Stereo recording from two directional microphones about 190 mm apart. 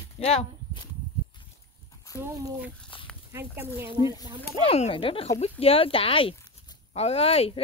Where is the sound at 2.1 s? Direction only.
10° right (ahead or behind).